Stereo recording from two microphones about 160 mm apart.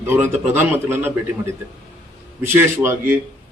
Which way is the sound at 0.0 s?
15° right (ahead or behind).